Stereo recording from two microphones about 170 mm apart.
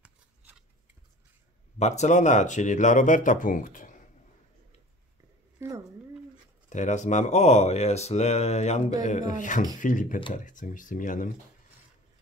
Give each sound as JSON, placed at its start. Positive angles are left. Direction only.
{"t": 0.0, "sound": "scissors", "side_deg": -10}
{"t": 1.8, "sound": "speech", "side_deg": 40}
{"t": 5.6, "sound": "speech", "side_deg": -15}
{"t": 6.7, "sound": "speech", "side_deg": 45}